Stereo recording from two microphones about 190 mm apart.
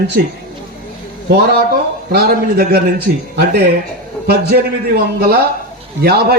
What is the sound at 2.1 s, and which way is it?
Speech, 55° right (ahead or behind).